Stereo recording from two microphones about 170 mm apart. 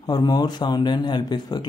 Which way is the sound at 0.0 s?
25° left (ahead or behind).